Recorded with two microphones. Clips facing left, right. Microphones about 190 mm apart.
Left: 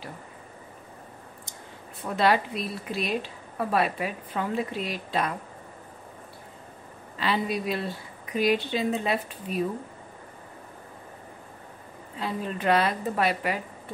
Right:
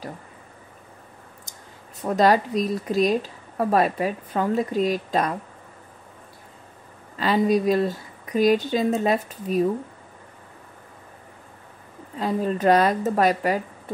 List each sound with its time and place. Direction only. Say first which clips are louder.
2.0 s a woman's voice: right 5 dB; 40° right (ahead or behind)
7.2 s speech: right 7 dB; 40° right (ahead or behind)
12.2 s a woman's voice: right 8 dB; 40° right (ahead or behind)